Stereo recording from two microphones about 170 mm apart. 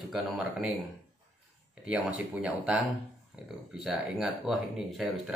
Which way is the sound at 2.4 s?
5° right (ahead or behind).